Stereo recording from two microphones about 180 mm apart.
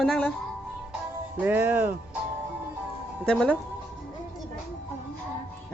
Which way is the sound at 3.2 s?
5° left (ahead or behind).